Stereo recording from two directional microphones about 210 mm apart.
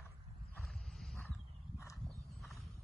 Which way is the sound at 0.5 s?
Centre (ahead or behind).